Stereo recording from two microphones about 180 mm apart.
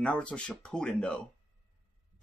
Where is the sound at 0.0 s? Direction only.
5° left (ahead or behind).